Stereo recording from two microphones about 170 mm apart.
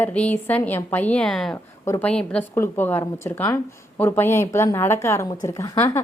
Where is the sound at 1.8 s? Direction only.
15° left (ahead or behind).